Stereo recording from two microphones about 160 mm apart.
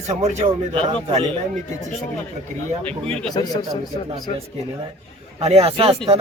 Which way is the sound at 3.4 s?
30° left (ahead or behind).